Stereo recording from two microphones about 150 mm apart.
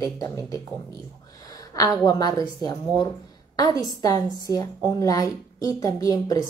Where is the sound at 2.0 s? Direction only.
25° left (ahead or behind).